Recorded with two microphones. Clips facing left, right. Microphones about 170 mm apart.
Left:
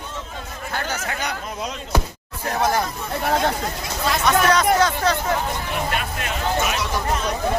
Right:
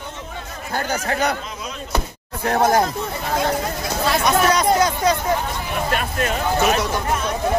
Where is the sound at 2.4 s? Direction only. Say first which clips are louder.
Right 4 dB; 50° right (ahead or behind).